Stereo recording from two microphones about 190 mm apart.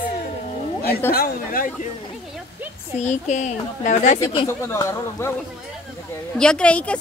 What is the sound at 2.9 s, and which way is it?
A woman's voice, 40° left (ahead or behind).